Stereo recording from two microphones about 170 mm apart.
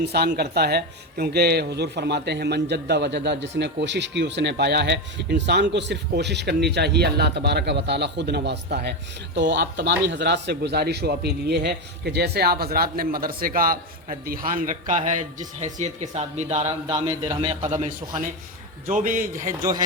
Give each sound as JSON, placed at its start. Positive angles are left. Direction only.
{"t": 0.0, "sound": "speech", "side_deg": -70}
{"t": 16.9, "sound": "a man's voice", "side_deg": -25}
{"t": 18.9, "sound": "a man's voice", "side_deg": -50}
{"t": 19.5, "sound": "a man's voice", "side_deg": -20}